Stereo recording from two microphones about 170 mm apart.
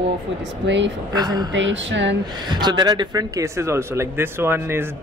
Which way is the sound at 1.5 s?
90° right.